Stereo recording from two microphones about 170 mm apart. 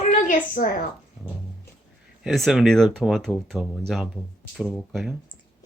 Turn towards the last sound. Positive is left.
turn(degrees=0)  # may be behind; listen again after turning